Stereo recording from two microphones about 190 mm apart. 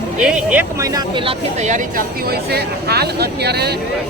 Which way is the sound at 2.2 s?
55° right (ahead or behind).